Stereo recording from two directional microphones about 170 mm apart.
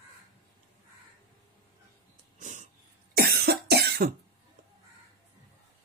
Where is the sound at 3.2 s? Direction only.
65° right (ahead or behind).